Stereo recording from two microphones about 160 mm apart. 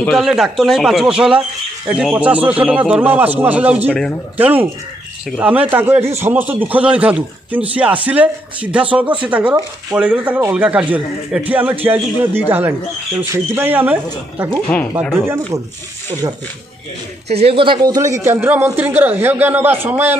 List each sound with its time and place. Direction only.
0.0 s a man's voice: centre (ahead or behind)
15.1 s a man's voice: 15° right (ahead or behind)
17.4 s a man's voice: 35° right (ahead or behind); by 20.2 s 10° right (ahead or behind)